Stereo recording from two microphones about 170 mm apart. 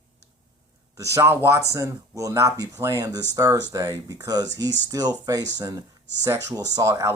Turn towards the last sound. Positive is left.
turn(degrees=-15)  # may be behind; listen again after turning